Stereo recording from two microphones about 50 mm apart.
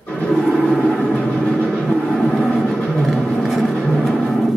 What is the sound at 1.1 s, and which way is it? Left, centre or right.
Music, centre.